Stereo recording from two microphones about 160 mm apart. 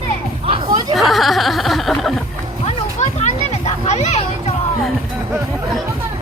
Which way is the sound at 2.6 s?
45° left (ahead or behind).